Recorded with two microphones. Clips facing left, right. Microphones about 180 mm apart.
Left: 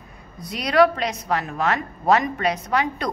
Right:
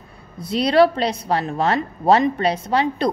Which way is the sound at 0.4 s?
30° right (ahead or behind).